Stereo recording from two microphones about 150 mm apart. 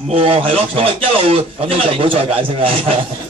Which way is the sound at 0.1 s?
40° right (ahead or behind).